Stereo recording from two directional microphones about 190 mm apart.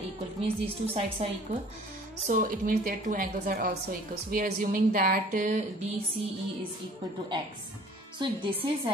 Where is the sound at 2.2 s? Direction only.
45° right (ahead or behind).